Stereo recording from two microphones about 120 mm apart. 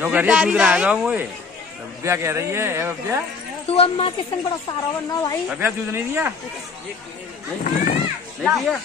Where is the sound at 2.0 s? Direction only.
25° right (ahead or behind).